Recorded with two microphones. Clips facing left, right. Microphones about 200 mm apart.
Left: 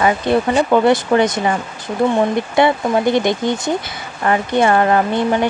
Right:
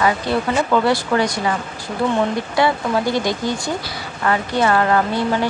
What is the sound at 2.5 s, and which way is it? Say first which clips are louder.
Speech: left 3 dB; 20° left (ahead or behind).